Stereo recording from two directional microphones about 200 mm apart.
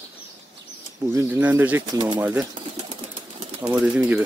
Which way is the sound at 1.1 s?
10° right (ahead or behind).